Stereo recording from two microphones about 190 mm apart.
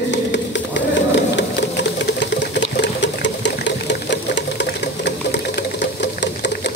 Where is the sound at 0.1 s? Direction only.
70° left (ahead or behind).